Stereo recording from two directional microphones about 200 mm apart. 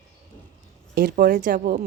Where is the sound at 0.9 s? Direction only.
50° right (ahead or behind).